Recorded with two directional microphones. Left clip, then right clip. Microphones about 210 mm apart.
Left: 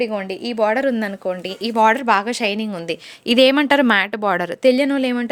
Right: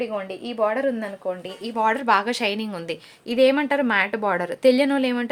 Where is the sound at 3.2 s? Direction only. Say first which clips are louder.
Left 5 dB; 45° left (ahead or behind).